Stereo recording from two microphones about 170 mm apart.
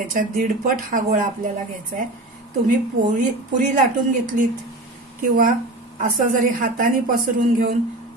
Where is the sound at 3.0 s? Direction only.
50° right (ahead or behind).